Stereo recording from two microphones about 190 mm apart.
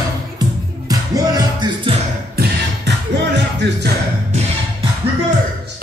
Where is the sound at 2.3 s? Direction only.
60° right (ahead or behind).